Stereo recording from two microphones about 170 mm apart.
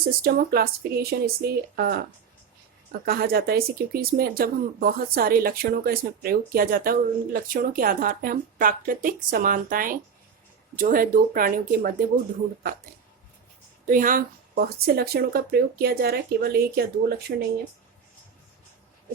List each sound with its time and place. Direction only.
0.0 s speech: 65° right (ahead or behind)
3.1 s speech: 60° right (ahead or behind)
13.8 s speech: 50° right (ahead or behind); by 17.3 s 65° right (ahead or behind)